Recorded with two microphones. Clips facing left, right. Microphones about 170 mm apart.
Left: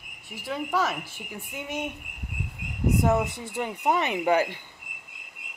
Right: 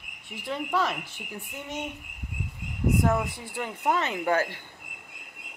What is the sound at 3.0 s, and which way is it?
Speech, 20° left (ahead or behind).